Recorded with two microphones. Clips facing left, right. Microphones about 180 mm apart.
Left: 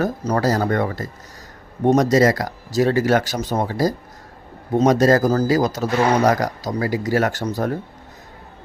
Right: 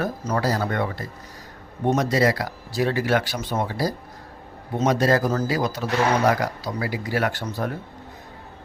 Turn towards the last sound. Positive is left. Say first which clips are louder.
# left 4 dB
turn(degrees=40)  # may be behind; listen again after turning